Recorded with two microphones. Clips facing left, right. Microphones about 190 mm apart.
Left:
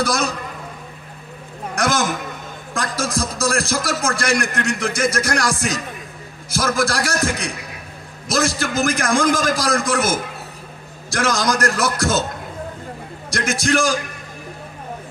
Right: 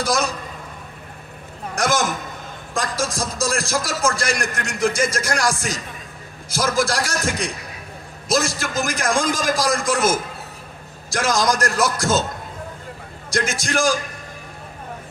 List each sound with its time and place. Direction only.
1.8 s a man's voice: 60° left (ahead or behind)
13.3 s speech: 60° left (ahead or behind)